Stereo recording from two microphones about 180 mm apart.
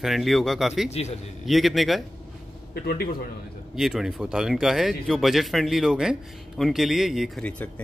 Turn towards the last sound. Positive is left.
turn(degrees=5)  # may be behind; listen again after turning